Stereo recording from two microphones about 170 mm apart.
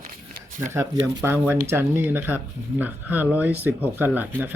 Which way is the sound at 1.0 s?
15° right (ahead or behind).